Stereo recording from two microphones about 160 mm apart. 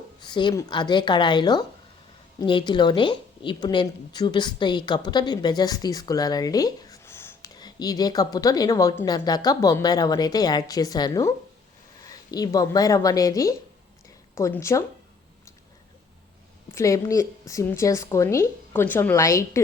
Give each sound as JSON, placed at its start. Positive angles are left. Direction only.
{"t": 0.2, "sound": "a woman's voice", "side_deg": 30}
{"t": 7.5, "sound": "a woman's voice", "side_deg": 25}
{"t": 16.7, "sound": "a woman's voice", "side_deg": 20}